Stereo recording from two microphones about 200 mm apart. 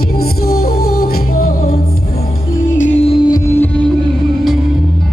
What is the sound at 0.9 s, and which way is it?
Music, 50° left (ahead or behind).